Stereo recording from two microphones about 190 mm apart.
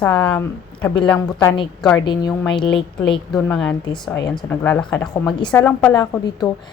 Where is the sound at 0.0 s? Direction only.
5° left (ahead or behind).